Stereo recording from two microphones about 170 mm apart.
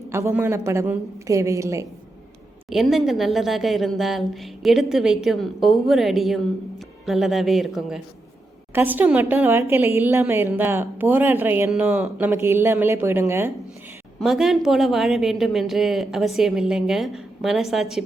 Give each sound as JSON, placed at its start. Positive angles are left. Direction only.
{"t": 0.1, "sound": "speech", "side_deg": -15}
{"t": 2.6, "sound": "speech", "side_deg": 0}
{"t": 14.2, "sound": "speech", "side_deg": 0}